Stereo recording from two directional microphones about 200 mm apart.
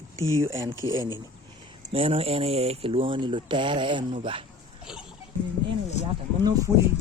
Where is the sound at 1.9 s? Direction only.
30° right (ahead or behind).